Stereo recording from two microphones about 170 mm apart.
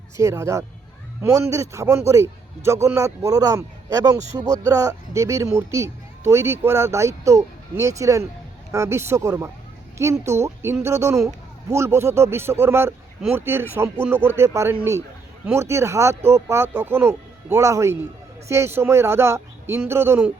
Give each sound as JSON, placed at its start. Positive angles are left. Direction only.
{"t": 0.2, "sound": "a man's voice", "side_deg": -15}